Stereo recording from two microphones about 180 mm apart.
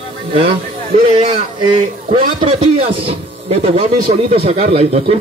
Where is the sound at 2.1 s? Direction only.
30° right (ahead or behind).